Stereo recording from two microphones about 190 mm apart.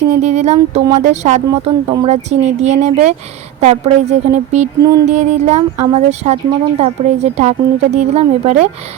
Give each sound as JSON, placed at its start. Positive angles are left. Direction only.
{"t": 0.2, "sound": "speech", "side_deg": -35}